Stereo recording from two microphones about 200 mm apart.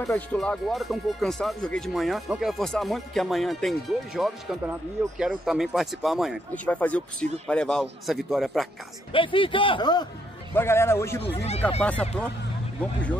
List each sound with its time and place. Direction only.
0.0 s speech: 5° left (ahead or behind)
9.1 s a man's voice: 25° left (ahead or behind); by 12.1 s 5° left (ahead or behind)